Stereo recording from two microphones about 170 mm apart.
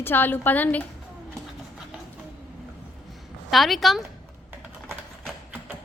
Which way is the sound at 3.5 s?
Centre (ahead or behind).